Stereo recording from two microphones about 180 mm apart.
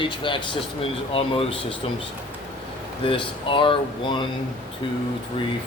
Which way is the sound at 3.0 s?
30° left (ahead or behind).